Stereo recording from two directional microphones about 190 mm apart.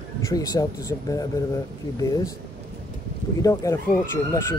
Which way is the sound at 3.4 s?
15° left (ahead or behind).